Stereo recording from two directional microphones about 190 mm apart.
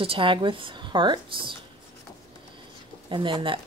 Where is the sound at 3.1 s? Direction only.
25° right (ahead or behind).